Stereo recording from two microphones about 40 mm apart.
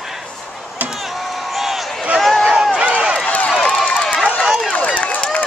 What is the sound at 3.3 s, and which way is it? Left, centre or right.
Run, left.